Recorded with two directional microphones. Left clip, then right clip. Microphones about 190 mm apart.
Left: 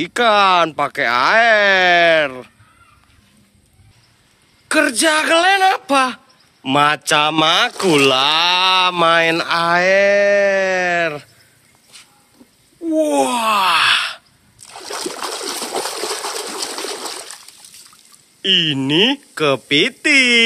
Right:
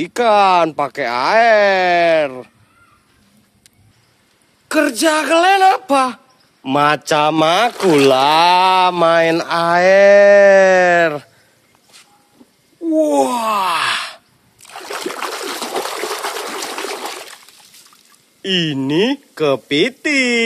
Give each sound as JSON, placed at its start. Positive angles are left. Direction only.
{"t": 0.0, "sound": "speech", "side_deg": -10}
{"t": 4.6, "sound": "speech", "side_deg": 0}
{"t": 9.8, "sound": "speech", "side_deg": -35}
{"t": 12.8, "sound": "speech", "side_deg": -10}
{"t": 14.7, "sound": "a sound", "side_deg": -5}
{"t": 16.2, "sound": "gush", "side_deg": -5}
{"t": 18.4, "sound": "speech", "side_deg": -5}